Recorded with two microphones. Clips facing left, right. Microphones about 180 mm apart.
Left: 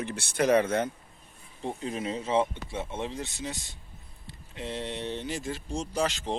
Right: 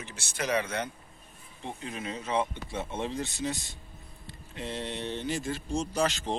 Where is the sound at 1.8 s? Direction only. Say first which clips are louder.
Left 4 dB; 30° left (ahead or behind).